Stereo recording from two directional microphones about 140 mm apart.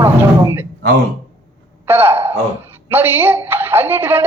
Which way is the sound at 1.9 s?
15° right (ahead or behind).